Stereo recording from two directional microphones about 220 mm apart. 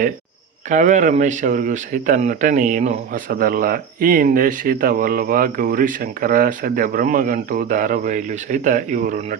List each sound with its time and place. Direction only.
0.7 s speech: 35° right (ahead or behind)